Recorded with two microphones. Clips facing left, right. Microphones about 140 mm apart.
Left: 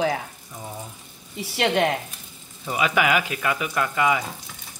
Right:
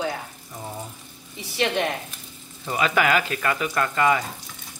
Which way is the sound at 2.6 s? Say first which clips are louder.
Even; 10° left (ahead or behind).